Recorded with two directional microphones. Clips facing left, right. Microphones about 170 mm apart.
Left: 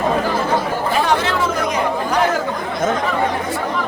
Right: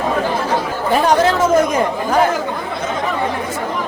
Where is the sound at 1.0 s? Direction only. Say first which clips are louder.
Right 5 dB; 40° right (ahead or behind).